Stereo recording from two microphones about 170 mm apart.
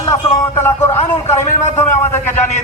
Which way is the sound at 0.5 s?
15° left (ahead or behind).